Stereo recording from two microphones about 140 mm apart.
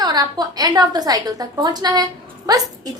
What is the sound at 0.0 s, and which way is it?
A woman's voice, 30° right (ahead or behind).